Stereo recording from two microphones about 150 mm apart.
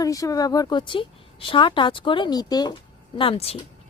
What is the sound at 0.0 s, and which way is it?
A woman's voice, 20° left (ahead or behind).